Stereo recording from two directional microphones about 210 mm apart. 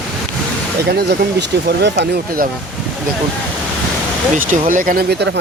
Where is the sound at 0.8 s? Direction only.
50° right (ahead or behind).